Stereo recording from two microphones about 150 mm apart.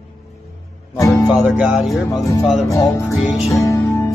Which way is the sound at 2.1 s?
25° left (ahead or behind).